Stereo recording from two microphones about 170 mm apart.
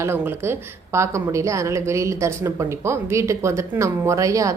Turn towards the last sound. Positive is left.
turn(degrees=-20)  # may be behind; listen again after turning